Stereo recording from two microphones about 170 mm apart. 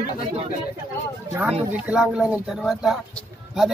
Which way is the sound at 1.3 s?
5° right (ahead or behind).